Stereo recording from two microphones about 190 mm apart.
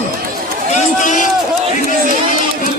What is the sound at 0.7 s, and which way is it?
Run, 40° left (ahead or behind).